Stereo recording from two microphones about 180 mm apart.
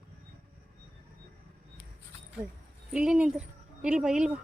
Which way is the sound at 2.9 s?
5° right (ahead or behind).